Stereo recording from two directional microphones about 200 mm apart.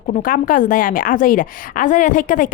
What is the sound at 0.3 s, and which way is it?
A woman's voice, 40° left (ahead or behind).